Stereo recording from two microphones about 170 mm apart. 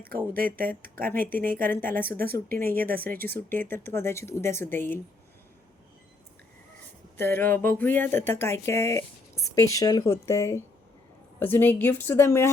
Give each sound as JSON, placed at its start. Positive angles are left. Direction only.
{"t": 0.3, "sound": "speech", "side_deg": -60}
{"t": 1.7, "sound": "speech", "side_deg": 10}
{"t": 2.1, "sound": "speech", "side_deg": -60}
{"t": 3.3, "sound": "speech", "side_deg": 10}
{"t": 7.2, "sound": "speech", "side_deg": 15}